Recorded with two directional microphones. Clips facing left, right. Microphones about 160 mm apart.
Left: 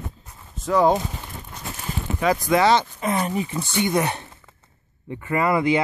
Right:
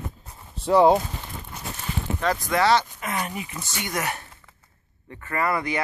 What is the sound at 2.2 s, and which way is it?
Speech, 15° left (ahead or behind).